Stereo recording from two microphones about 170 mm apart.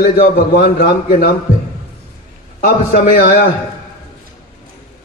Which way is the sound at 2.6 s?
60° left (ahead or behind).